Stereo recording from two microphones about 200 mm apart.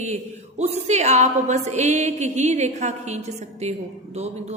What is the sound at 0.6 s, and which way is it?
Speech, 35° right (ahead or behind).